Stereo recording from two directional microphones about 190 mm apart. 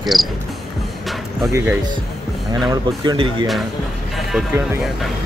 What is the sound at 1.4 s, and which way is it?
Speech, 15° right (ahead or behind).